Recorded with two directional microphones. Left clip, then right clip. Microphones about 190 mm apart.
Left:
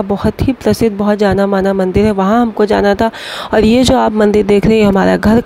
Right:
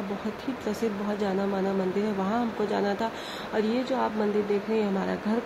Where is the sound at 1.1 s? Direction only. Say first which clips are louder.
Left 18 dB; 50° left (ahead or behind).